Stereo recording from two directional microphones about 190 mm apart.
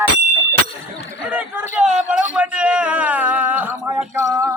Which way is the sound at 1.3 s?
10° right (ahead or behind).